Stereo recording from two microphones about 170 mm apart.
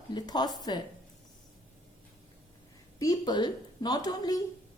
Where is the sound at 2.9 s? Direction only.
25° left (ahead or behind).